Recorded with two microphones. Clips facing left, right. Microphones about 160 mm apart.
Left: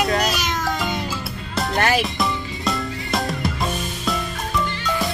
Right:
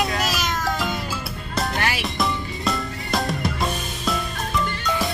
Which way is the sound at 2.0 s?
Centre (ahead or behind).